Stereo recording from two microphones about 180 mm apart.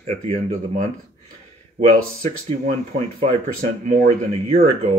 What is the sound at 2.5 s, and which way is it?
Speech, 35° right (ahead or behind).